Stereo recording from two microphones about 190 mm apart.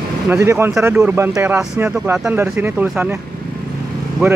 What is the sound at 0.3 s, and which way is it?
Speech, 15° right (ahead or behind).